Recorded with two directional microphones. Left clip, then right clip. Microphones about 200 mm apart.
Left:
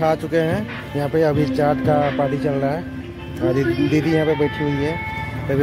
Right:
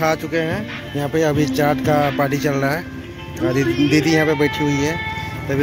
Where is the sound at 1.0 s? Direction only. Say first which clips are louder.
Even; 5° left (ahead or behind).